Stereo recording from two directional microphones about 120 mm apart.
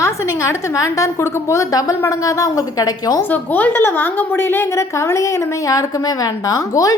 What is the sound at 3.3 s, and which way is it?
A woman's voice, 15° left (ahead or behind).